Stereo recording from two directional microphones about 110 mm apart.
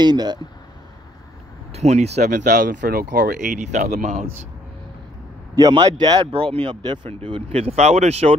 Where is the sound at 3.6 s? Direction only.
90° right.